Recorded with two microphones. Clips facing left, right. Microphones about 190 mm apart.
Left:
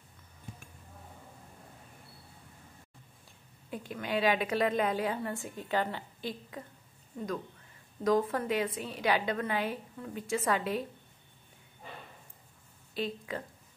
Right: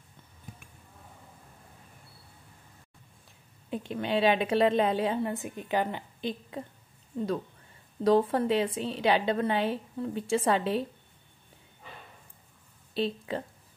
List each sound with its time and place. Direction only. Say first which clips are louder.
3.7 s a woman's voice: right 4 dB; 25° right (ahead or behind)
8.0 s a woman's voice: right 5 dB; 30° right (ahead or behind)
12.9 s speech: right 5 dB; 30° right (ahead or behind)